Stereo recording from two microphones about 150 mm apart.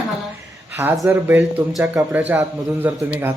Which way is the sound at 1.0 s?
15° right (ahead or behind).